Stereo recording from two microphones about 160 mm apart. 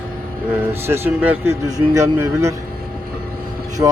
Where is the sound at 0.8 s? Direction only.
15° right (ahead or behind).